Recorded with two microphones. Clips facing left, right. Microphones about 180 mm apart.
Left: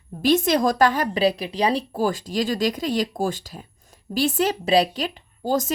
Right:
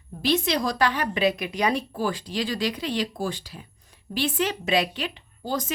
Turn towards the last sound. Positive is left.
turn(degrees=45)  # may be behind; listen again after turning